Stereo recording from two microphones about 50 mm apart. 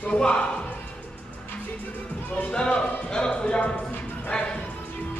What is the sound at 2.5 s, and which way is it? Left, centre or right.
Speech, centre.